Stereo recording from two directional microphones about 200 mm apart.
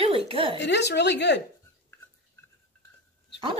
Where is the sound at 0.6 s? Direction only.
60° left (ahead or behind).